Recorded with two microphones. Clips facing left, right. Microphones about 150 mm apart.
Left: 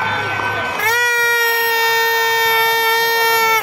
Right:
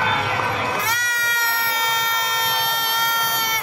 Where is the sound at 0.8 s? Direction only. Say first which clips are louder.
Left 7 dB; 65° left (ahead or behind).